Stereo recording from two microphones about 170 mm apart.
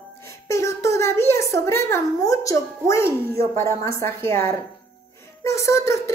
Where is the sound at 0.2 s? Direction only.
15° left (ahead or behind).